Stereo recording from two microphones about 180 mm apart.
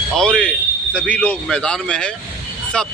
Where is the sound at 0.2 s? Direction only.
5° left (ahead or behind).